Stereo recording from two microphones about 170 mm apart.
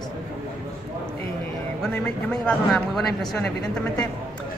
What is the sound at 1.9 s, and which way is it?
Speech, 5° left (ahead or behind).